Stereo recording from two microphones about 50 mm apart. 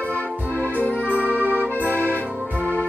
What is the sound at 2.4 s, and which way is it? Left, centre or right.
Music, right.